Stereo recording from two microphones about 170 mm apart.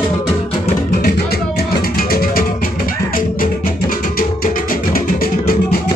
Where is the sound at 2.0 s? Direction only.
60° left (ahead or behind).